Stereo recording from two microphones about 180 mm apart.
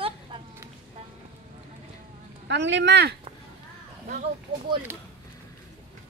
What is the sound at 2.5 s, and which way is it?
Speech, 80° right.